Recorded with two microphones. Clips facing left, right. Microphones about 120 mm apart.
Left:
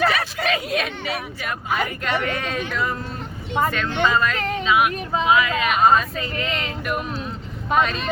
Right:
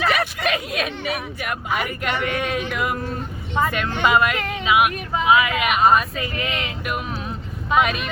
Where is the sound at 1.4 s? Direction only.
15° right (ahead or behind).